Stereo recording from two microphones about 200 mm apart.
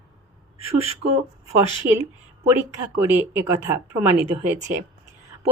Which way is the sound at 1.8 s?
55° right (ahead or behind).